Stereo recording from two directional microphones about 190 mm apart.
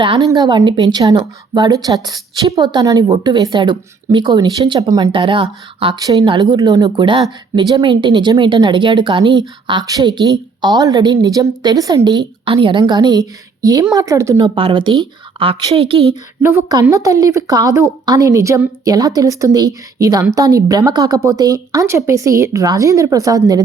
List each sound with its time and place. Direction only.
0.0 s speech: 25° right (ahead or behind)
16.4 s a woman's voice: 15° right (ahead or behind)